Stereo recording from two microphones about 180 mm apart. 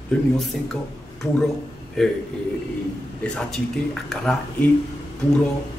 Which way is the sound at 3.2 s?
5° left (ahead or behind).